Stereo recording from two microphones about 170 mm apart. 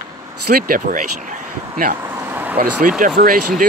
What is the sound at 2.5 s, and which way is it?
Speech, 55° right (ahead or behind).